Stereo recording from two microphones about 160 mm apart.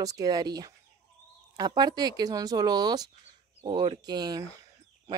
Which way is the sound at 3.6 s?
35° right (ahead or behind).